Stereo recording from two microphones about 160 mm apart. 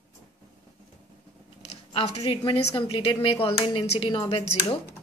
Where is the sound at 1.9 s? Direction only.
35° left (ahead or behind).